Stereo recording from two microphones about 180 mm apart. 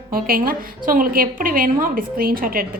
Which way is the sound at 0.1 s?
55° right (ahead or behind).